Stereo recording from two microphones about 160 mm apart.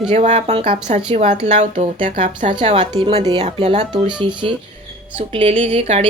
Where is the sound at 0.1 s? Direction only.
45° right (ahead or behind).